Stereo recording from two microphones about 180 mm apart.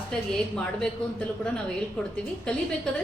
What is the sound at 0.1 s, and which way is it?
Speech, 5° left (ahead or behind).